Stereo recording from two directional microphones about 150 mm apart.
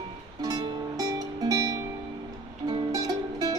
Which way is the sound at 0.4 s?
25° right (ahead or behind).